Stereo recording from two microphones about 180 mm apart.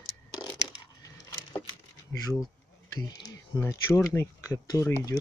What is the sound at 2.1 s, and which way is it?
Speech, 20° left (ahead or behind).